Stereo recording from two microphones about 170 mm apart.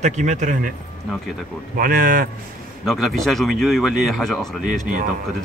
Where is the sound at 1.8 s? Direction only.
55° right (ahead or behind).